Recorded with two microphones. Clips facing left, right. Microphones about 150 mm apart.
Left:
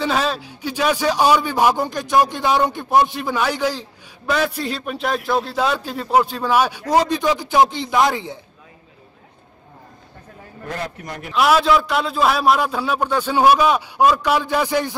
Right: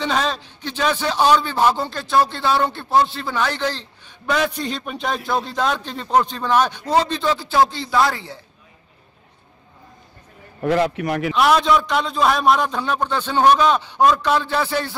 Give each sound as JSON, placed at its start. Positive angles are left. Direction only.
{"t": 0.0, "sound": "a man's voice", "side_deg": 5}
{"t": 10.6, "sound": "a man's voice", "side_deg": -90}
{"t": 11.3, "sound": "a man's voice", "side_deg": 5}